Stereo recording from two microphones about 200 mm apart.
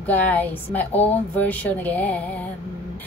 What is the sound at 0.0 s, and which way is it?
A woman's voice, 10° left (ahead or behind).